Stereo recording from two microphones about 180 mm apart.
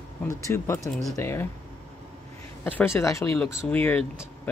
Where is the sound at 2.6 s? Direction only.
15° left (ahead or behind).